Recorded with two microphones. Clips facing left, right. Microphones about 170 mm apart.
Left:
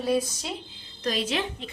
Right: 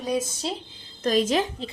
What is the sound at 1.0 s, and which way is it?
Speech, 45° right (ahead or behind).